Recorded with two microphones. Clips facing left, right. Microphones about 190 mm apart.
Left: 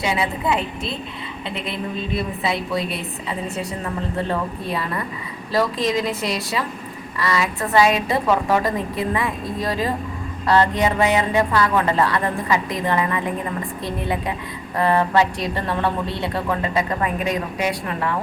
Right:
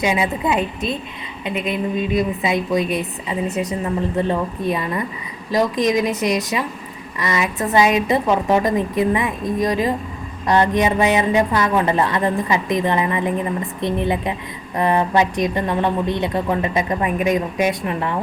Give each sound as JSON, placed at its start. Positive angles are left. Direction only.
{"t": 0.0, "sound": "a woman's voice", "side_deg": -20}